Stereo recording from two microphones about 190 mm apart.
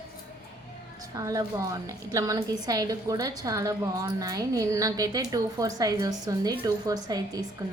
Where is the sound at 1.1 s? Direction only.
15° right (ahead or behind).